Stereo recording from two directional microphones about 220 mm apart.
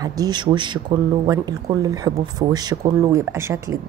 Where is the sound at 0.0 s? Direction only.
15° right (ahead or behind).